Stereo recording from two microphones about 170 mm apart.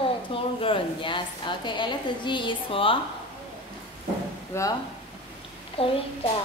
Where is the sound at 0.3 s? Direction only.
30° left (ahead or behind).